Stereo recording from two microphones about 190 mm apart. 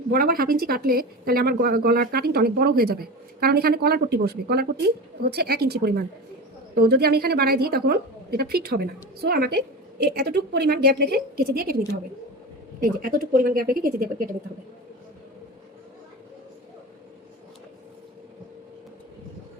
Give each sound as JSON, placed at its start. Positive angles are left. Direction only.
{"t": 0.1, "sound": "a woman's voice", "side_deg": -50}
{"t": 12.8, "sound": "a woman's voice", "side_deg": -50}